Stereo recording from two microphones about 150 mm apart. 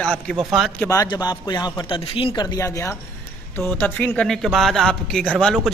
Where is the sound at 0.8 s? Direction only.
25° left (ahead or behind).